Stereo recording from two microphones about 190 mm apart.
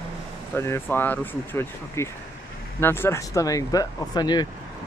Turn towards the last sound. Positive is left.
turn(degrees=20)  # may be behind; listen again after turning